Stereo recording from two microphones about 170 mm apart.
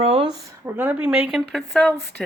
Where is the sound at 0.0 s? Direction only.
35° right (ahead or behind).